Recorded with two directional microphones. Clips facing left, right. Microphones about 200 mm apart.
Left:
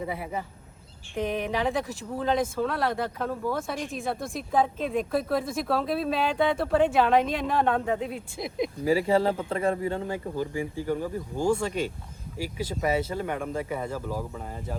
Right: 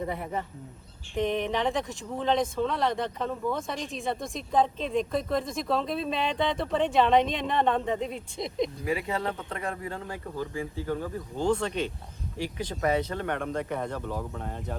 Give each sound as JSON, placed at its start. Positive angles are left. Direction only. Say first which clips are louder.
{"t": 0.0, "sound": "speech", "louder": "even", "side_deg": 5}
{"t": 8.8, "sound": "speech", "louder": "left 7 dB", "side_deg": 30}
{"t": 10.5, "sound": "speech", "louder": "left 3 dB", "side_deg": 15}